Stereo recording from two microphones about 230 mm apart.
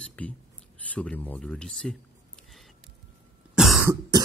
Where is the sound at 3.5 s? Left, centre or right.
Centre.